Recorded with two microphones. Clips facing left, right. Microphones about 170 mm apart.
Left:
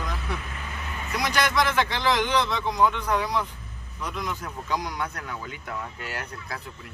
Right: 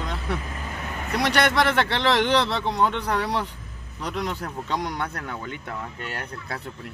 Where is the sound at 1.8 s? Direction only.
30° right (ahead or behind).